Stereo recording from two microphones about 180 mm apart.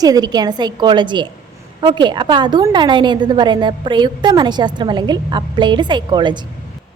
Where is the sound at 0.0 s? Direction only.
20° right (ahead or behind).